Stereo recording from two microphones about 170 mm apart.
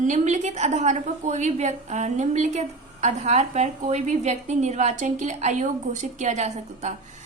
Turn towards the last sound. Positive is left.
turn(degrees=-45)  # may be behind; listen again after turning